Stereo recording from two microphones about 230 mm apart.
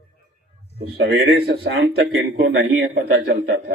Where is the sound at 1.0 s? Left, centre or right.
Right.